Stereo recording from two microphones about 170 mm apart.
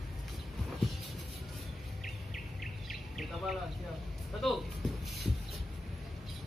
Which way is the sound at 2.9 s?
Centre (ahead or behind).